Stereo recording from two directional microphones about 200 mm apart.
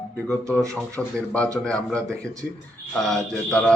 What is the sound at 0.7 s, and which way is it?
A man's voice, 5° left (ahead or behind).